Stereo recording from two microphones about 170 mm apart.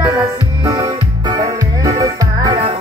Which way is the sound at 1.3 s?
20° right (ahead or behind).